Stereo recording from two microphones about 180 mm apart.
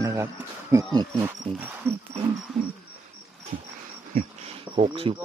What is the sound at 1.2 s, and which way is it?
Speech, 10° right (ahead or behind).